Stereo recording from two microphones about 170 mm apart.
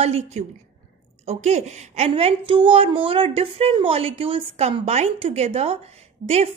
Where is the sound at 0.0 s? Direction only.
40° right (ahead or behind).